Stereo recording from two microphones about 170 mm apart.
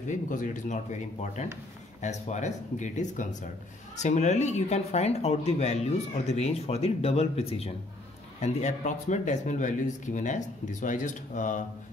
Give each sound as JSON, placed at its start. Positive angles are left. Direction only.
{"t": 0.1, "sound": "speech", "side_deg": 50}